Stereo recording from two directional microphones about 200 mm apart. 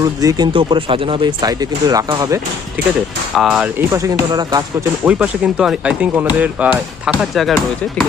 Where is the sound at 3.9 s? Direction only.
15° right (ahead or behind).